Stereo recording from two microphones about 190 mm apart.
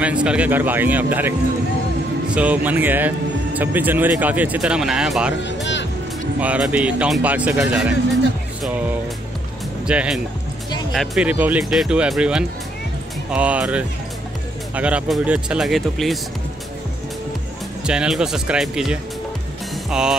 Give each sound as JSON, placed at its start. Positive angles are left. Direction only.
{"t": 0.0, "sound": "speech", "side_deg": -5}
{"t": 5.4, "sound": "speech", "side_deg": 70}
{"t": 6.4, "sound": "speech", "side_deg": -5}
{"t": 9.8, "sound": "speech", "side_deg": -5}
{"t": 17.8, "sound": "speech", "side_deg": -5}